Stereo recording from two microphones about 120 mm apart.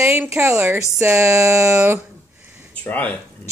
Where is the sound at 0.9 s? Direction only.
20° right (ahead or behind).